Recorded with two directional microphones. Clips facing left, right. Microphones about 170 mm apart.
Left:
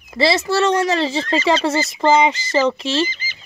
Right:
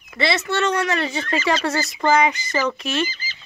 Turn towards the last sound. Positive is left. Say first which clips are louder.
# left 4 dB
turn(degrees=30)  # may be behind; listen again after turning